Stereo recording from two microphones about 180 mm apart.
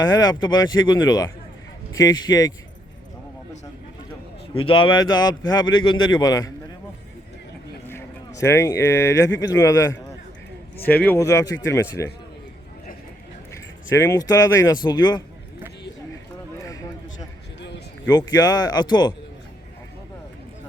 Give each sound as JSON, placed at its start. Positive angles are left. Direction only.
{"t": 0.0, "sound": "a man's voice", "side_deg": 20}
{"t": 4.6, "sound": "a man's voice", "side_deg": 30}
{"t": 7.9, "sound": "a man's voice", "side_deg": 15}
{"t": 13.5, "sound": "speech", "side_deg": 15}
{"t": 16.6, "sound": "a sound", "side_deg": 20}
{"t": 18.1, "sound": "a man's voice", "side_deg": 20}